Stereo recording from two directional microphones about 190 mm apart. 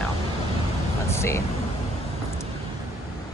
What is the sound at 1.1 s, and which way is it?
Speech, 15° left (ahead or behind).